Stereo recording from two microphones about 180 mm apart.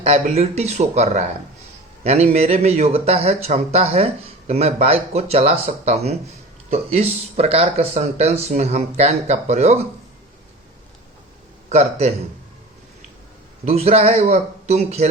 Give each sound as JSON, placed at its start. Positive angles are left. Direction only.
{"t": 0.0, "sound": "speech", "side_deg": -35}
{"t": 11.7, "sound": "speech", "side_deg": -35}
{"t": 13.7, "sound": "speech", "side_deg": -35}